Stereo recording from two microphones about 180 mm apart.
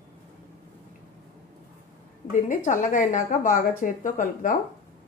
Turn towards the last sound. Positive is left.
turn(degrees=45)  # may be behind; listen again after turning